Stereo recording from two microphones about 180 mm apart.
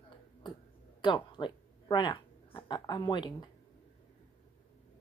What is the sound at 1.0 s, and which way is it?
Speech, 25° left (ahead or behind).